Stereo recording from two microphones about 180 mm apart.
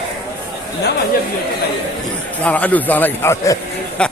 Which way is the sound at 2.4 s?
10° left (ahead or behind).